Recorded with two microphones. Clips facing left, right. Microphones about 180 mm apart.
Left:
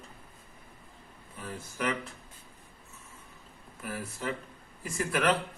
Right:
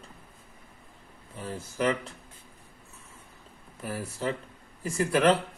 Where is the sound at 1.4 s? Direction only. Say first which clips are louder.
Right 5 dB; 30° right (ahead or behind).